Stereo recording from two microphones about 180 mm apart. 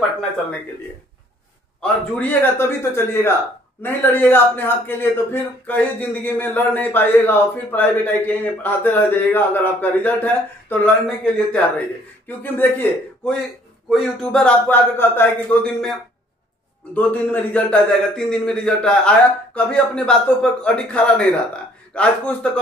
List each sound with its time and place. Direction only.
1.8 s a man's voice: 10° left (ahead or behind)